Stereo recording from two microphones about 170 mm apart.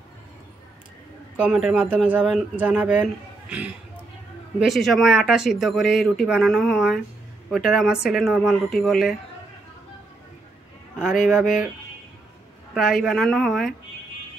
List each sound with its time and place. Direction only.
1.4 s speech: 5° right (ahead or behind)
12.7 s speech: centre (ahead or behind)